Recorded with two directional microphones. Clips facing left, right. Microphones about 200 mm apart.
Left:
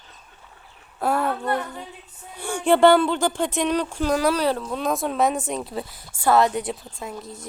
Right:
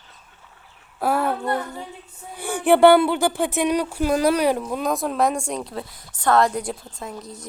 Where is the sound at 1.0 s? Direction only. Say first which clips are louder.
Right 1 dB; centre (ahead or behind).